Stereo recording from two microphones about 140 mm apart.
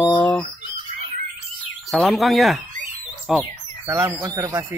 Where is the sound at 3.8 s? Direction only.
20° right (ahead or behind).